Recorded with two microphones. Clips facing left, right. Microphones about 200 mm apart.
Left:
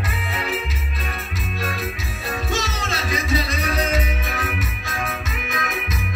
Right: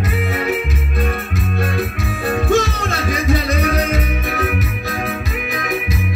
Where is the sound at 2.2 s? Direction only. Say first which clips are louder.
Right 10 dB; 55° right (ahead or behind).